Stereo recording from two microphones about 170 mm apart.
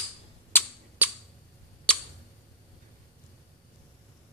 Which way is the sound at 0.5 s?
10° left (ahead or behind).